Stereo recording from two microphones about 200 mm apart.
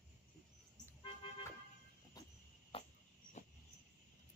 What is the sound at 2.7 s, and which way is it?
Cricket, 30° left (ahead or behind).